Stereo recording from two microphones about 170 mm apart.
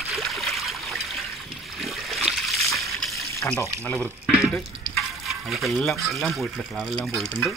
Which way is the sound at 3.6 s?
10° left (ahead or behind).